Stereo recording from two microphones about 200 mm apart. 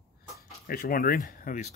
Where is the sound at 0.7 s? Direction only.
45° left (ahead or behind).